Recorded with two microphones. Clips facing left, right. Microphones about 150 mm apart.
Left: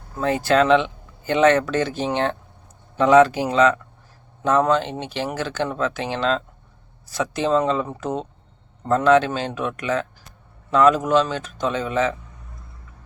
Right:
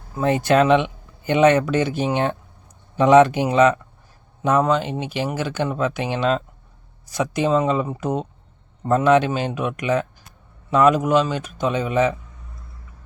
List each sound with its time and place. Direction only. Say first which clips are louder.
0.2 s speech: right 1 dB; 20° right (ahead or behind)